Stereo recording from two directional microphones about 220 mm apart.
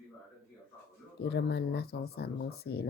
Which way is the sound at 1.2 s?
45° left (ahead or behind).